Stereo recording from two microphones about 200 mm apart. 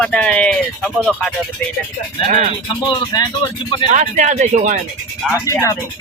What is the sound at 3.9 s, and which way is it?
Speech, 40° right (ahead or behind).